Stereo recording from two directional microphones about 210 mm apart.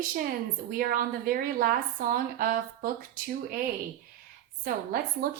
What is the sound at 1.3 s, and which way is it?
A woman's voice, 40° right (ahead or behind).